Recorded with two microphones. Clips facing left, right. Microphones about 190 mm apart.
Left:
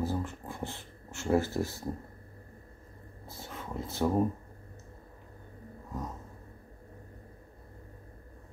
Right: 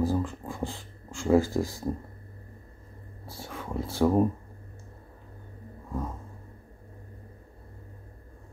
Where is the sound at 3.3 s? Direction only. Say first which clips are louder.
Right 4 dB; 20° left (ahead or behind).